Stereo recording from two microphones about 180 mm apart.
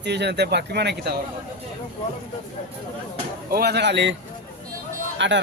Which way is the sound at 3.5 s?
60° right (ahead or behind).